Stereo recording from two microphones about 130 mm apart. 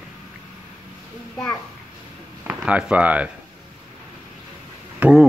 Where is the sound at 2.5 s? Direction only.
10° right (ahead or behind).